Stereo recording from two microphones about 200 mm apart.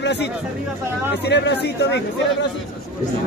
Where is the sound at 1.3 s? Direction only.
55° left (ahead or behind).